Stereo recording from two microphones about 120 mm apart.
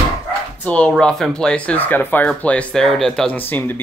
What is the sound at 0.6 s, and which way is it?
Speech, 10° left (ahead or behind).